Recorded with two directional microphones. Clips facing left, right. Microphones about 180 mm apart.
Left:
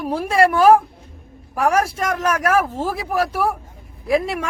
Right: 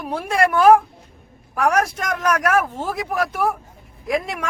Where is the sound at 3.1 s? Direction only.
Centre (ahead or behind).